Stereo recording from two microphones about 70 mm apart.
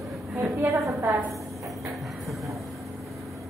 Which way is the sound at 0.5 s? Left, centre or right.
Right.